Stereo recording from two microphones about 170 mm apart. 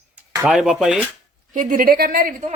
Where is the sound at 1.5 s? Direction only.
50° right (ahead or behind).